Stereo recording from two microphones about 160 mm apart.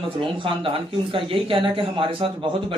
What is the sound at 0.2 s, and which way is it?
Speech, 30° right (ahead or behind).